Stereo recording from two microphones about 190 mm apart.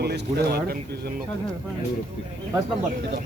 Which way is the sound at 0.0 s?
55° right (ahead or behind).